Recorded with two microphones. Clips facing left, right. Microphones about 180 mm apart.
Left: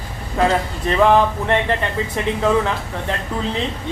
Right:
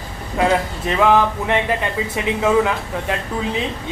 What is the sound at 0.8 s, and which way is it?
Speech, 5° right (ahead or behind).